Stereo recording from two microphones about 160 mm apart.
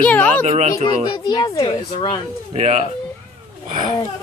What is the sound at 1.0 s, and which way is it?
A woman's voice, 25° left (ahead or behind).